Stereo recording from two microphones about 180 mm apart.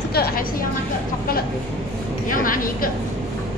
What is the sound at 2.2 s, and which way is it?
Speech, 50° left (ahead or behind).